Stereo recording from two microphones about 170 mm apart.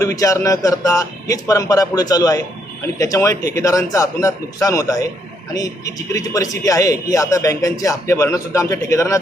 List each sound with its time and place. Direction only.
0.0 s a man's voice: 20° left (ahead or behind)
6.1 s a man's voice: 20° left (ahead or behind)